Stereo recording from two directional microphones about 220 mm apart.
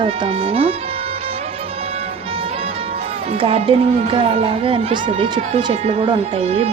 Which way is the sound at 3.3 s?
25° right (ahead or behind).